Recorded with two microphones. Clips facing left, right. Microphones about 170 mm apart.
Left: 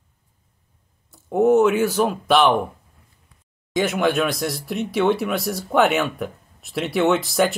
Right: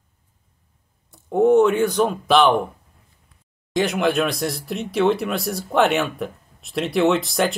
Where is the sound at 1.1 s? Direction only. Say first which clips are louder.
Right 1 dB; 5° left (ahead or behind).